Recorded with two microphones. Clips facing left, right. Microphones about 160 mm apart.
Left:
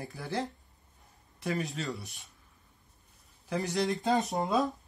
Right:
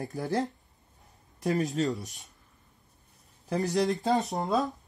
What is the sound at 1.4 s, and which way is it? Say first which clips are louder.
Speech: right 6 dB; 40° right (ahead or behind).